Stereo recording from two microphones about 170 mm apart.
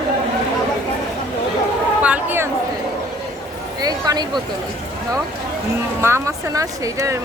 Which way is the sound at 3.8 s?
25° right (ahead or behind).